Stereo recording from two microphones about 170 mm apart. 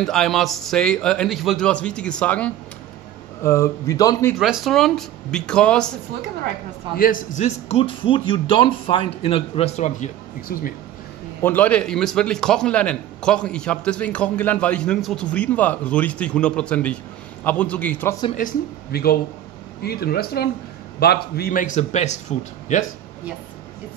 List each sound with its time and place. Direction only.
0.0 s a man's voice: 5° left (ahead or behind); by 4.4 s 20° left (ahead or behind)
4.4 s a man's voice: centre (ahead or behind)
7.0 s a man's voice: 50° left (ahead or behind)
11.4 s a man's voice: 10° left (ahead or behind)
18.3 s a man's voice: 60° left (ahead or behind)